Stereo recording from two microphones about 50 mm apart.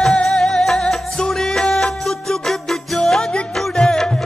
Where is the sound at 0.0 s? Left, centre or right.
Centre.